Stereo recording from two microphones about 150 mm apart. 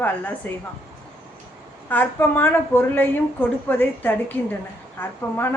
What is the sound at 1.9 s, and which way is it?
Speech, 15° left (ahead or behind).